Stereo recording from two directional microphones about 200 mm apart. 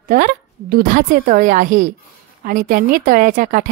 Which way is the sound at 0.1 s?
45° right (ahead or behind).